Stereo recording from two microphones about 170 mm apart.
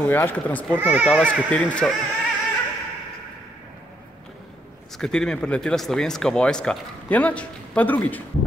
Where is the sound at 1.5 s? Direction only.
5° left (ahead or behind).